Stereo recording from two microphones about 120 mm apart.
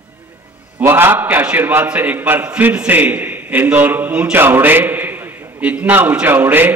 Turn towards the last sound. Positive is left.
turn(degrees=-15)  # may be behind; listen again after turning